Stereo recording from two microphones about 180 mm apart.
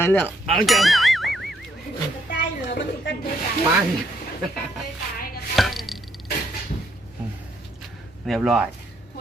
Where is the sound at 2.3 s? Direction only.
75° left (ahead or behind).